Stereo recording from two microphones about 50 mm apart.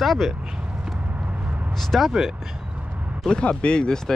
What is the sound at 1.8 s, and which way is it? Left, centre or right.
Speech, centre.